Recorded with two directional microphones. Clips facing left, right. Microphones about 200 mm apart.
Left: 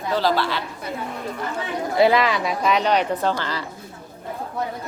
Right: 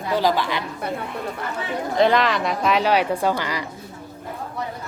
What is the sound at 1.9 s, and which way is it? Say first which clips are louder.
Speech: left 1 dB; 5° left (ahead or behind).